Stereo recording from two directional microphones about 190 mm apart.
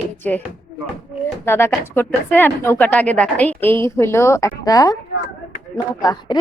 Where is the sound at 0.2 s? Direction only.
10° left (ahead or behind).